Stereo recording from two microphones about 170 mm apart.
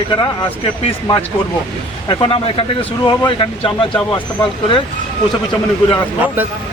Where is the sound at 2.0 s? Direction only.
30° left (ahead or behind).